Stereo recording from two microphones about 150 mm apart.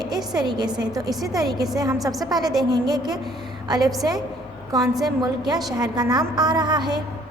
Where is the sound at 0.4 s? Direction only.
30° right (ahead or behind).